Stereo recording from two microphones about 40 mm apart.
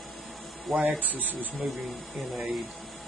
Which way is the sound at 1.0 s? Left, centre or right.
Right.